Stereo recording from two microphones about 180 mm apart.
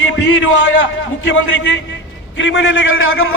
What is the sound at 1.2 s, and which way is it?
A man's voice, 85° left.